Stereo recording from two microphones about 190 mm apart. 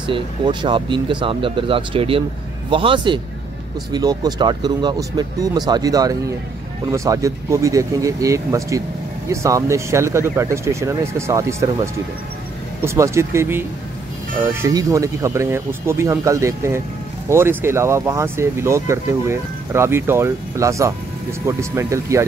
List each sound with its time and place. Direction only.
0.0 s speech: 25° right (ahead or behind)